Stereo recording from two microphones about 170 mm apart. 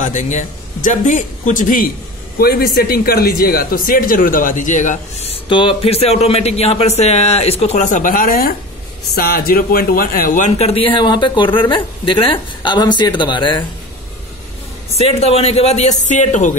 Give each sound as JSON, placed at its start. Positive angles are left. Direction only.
{"t": 0.0, "sound": "a man's voice", "side_deg": 45}
{"t": 15.0, "sound": "a man's voice", "side_deg": 35}